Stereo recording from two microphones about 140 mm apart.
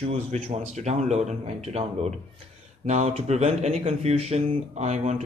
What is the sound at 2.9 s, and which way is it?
Speech, 50° right (ahead or behind).